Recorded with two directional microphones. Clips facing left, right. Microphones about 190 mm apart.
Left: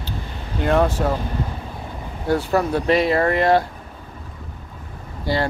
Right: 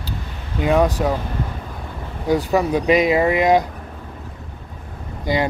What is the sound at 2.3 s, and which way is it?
Speech, 15° right (ahead or behind).